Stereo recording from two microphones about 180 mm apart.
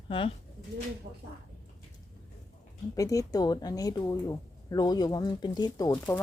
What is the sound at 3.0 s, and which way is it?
Speech, 20° left (ahead or behind).